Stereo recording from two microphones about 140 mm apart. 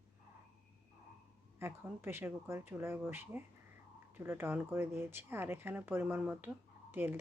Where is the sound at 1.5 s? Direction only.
20° right (ahead or behind).